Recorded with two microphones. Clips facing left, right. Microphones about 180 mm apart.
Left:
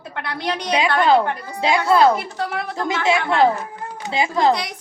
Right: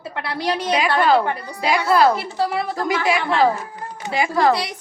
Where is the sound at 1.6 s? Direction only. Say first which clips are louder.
Left 1 dB; 25° left (ahead or behind).